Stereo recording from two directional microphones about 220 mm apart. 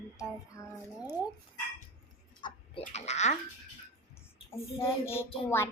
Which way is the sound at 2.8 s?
30° left (ahead or behind).